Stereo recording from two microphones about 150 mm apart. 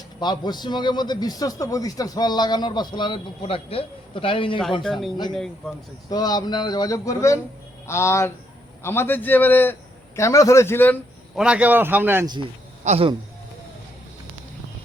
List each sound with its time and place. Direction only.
0.2 s a man's voice: 30° left (ahead or behind)
4.8 s speech: centre (ahead or behind)
6.1 s a man's voice: 25° left (ahead or behind)
11.3 s a man's voice: 5° right (ahead or behind)
12.2 s a man's voice: 30° right (ahead or behind)
12.8 s a man's voice: 50° right (ahead or behind)